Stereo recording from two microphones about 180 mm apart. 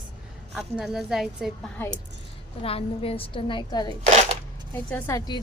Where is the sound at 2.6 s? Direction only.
30° left (ahead or behind).